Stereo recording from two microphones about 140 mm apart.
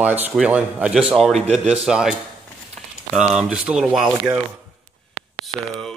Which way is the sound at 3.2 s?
5° right (ahead or behind).